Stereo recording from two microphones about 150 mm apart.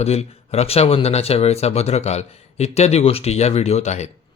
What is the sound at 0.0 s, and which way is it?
Speech, 45° left (ahead or behind).